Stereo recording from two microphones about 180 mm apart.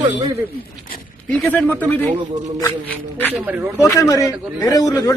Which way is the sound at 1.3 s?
10° left (ahead or behind).